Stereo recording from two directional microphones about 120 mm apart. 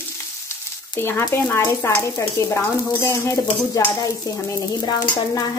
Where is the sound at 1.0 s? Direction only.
20° left (ahead or behind).